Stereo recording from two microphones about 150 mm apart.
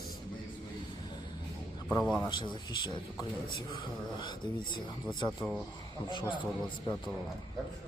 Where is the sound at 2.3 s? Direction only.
30° left (ahead or behind).